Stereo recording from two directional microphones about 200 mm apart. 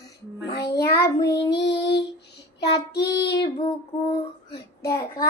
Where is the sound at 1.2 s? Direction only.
55° left (ahead or behind).